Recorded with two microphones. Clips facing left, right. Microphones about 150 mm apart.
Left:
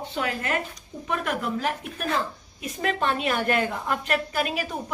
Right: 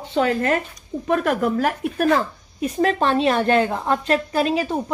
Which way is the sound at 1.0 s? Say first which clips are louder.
Right 8 dB; 45° right (ahead or behind).